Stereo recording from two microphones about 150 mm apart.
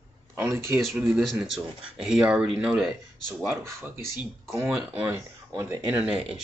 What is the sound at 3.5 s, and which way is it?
Speech, 15° right (ahead or behind).